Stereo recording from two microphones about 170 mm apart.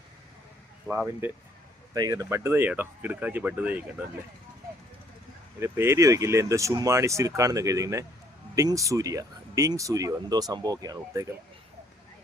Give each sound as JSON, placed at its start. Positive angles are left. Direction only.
{"t": 0.9, "sound": "speech", "side_deg": -10}
{"t": 1.9, "sound": "speech", "side_deg": -20}
{"t": 5.5, "sound": "speech", "side_deg": -15}